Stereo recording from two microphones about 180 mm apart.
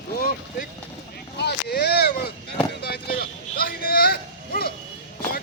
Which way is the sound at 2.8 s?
60° left (ahead or behind).